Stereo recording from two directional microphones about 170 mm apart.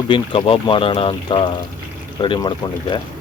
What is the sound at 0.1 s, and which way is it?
Speech, 30° left (ahead or behind).